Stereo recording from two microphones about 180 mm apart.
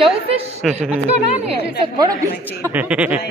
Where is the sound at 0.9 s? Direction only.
35° right (ahead or behind).